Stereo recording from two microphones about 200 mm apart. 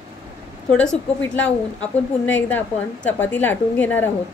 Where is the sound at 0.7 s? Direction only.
5° left (ahead or behind).